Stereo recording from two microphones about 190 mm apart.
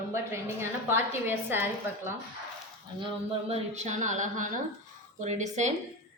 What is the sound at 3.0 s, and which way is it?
A woman's voice, 30° right (ahead or behind).